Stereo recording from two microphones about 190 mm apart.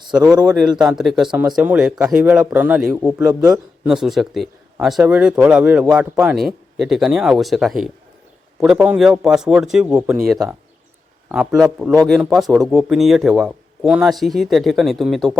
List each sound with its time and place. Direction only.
0.2 s a man's voice: 20° right (ahead or behind)
0.9 s speech: centre (ahead or behind)